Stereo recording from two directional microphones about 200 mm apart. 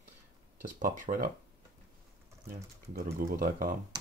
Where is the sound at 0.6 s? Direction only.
40° right (ahead or behind).